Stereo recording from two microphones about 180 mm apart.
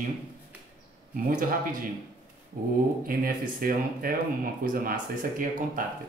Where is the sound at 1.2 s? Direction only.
50° right (ahead or behind).